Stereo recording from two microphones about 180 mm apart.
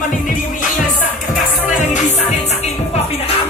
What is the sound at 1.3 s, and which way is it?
Music, 45° left (ahead or behind).